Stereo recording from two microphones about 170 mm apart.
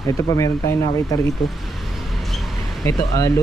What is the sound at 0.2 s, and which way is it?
Speech, 20° left (ahead or behind).